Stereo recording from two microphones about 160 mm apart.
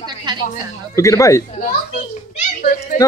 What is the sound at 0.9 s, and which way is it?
Speech, 20° left (ahead or behind).